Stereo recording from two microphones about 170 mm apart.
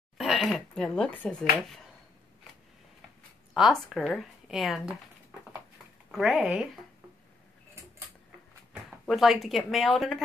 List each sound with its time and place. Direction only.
0.2 s speech: centre (ahead or behind)
3.5 s a woman's voice: centre (ahead or behind)
6.1 s a woman's voice: 5° right (ahead or behind)
9.0 s a woman's voice: centre (ahead or behind)